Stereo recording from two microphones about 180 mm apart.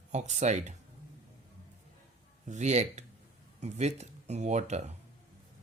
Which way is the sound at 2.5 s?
40° right (ahead or behind).